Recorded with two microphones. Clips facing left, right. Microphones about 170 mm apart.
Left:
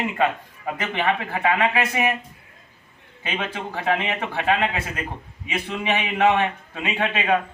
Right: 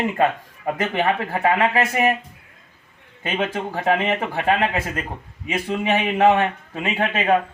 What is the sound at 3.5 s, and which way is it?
Speech, 45° right (ahead or behind).